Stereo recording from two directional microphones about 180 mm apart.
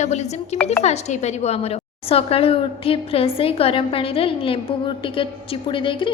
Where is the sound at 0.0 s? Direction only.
40° left (ahead or behind).